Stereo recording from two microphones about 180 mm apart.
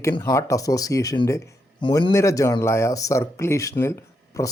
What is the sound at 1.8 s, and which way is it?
Speech, 25° left (ahead or behind).